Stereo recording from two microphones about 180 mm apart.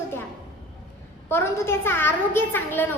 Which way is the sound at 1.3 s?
15° left (ahead or behind).